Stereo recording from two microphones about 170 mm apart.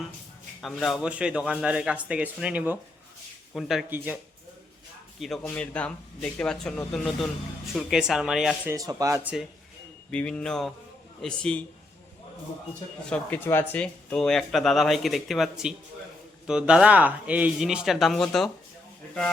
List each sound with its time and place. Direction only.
0.6 s a man's voice: centre (ahead or behind)
5.2 s speech: 5° left (ahead or behind)
8.7 s speech: 20° right (ahead or behind)
9.2 s speech: 5° right (ahead or behind)
13.1 s speech: 10° left (ahead or behind)